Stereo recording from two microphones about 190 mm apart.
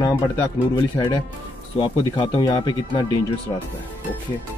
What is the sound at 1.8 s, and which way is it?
Speech, 25° left (ahead or behind).